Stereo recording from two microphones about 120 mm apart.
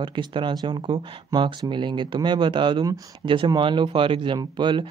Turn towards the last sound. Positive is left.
turn(degrees=-40)  # may be behind; listen again after turning